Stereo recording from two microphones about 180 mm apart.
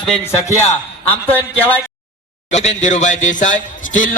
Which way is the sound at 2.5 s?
40° left (ahead or behind).